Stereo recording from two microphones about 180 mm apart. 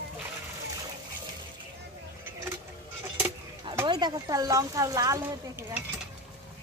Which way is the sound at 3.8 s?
25° right (ahead or behind).